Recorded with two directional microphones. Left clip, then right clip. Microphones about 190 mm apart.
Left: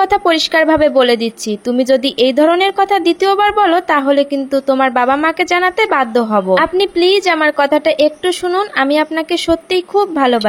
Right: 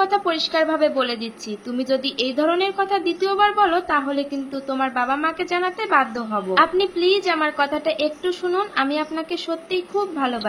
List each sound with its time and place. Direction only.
0.0 s a woman's voice: 45° left (ahead or behind)